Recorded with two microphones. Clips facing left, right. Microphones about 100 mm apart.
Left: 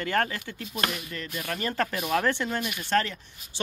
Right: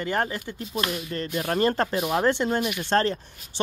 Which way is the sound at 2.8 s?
35° right (ahead or behind).